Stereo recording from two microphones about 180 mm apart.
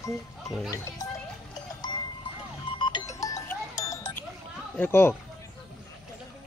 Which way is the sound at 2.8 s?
20° left (ahead or behind).